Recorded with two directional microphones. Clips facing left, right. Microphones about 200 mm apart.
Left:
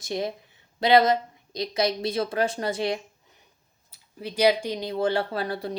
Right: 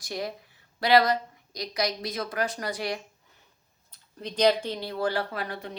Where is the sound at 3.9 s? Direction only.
10° left (ahead or behind); by 5.7 s 35° left (ahead or behind).